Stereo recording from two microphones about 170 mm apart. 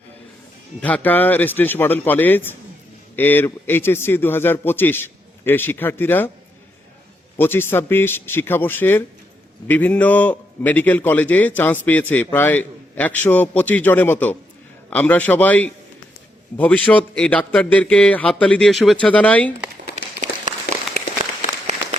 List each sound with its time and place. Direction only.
0.8 s a man's voice: 10° left (ahead or behind)
7.3 s a man's voice: 15° left (ahead or behind)
20.0 s a sound: 45° right (ahead or behind)